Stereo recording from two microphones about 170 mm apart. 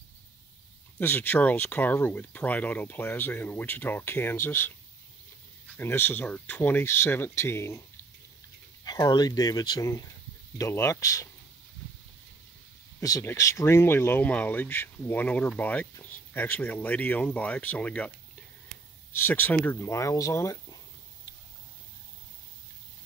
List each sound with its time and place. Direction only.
0.9 s speech: 10° left (ahead or behind)
5.8 s speech: 15° left (ahead or behind)
8.8 s speech: 25° left (ahead or behind)
13.0 s speech: 15° left (ahead or behind)
19.1 s speech: 10° left (ahead or behind)